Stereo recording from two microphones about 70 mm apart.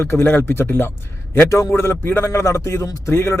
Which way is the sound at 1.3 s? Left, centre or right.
Left.